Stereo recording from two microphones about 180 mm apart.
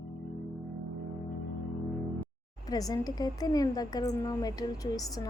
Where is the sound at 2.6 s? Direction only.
20° left (ahead or behind).